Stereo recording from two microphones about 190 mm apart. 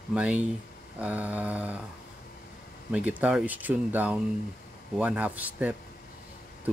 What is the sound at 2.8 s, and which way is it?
Speech, 10° right (ahead or behind).